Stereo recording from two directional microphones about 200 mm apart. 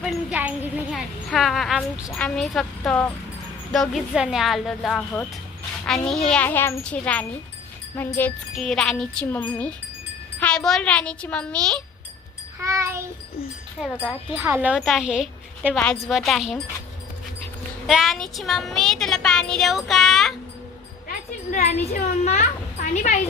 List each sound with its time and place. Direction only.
0.0 s a child's voice: 5° right (ahead or behind)
12.5 s a sound: 15° right (ahead or behind)
14.0 s speech: 5° right (ahead or behind)
17.8 s speech: centre (ahead or behind)
21.1 s a child's voice: 40° left (ahead or behind)